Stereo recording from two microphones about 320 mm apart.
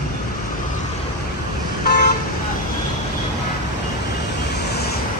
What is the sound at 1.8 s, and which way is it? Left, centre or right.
Vehicle, left.